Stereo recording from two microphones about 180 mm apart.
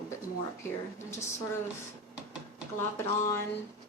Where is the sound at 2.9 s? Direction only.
15° left (ahead or behind).